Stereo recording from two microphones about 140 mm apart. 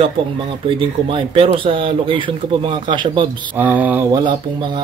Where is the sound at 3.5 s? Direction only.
10° right (ahead or behind).